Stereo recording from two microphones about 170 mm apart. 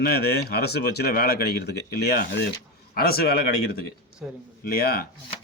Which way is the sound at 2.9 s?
60° left (ahead or behind).